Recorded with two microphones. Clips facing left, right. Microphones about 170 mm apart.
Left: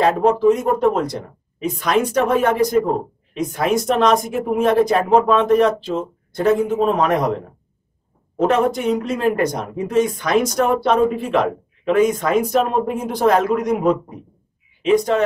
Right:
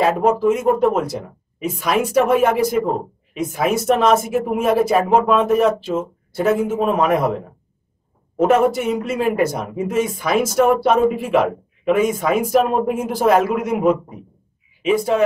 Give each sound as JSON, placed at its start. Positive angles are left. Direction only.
{"t": 0.0, "sound": "speech", "side_deg": -5}